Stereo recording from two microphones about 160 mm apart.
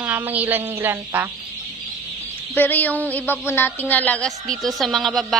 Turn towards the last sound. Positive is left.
turn(degrees=0)  # may be behind; listen again after turning